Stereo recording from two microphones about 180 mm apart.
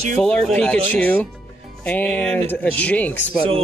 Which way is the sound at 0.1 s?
5° left (ahead or behind).